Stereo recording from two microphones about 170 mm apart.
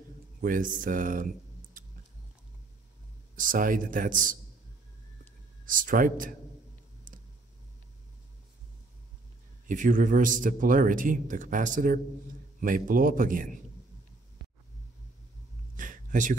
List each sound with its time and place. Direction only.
0.4 s speech: 50° right (ahead or behind)
3.3 s a man's voice: 55° right (ahead or behind)
5.7 s a man's voice: 55° right (ahead or behind)
9.7 s a man's voice: 50° right (ahead or behind)
15.7 s a sound: 50° right (ahead or behind)